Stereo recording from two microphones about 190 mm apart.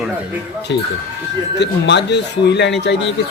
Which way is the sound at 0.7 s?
70° left (ahead or behind).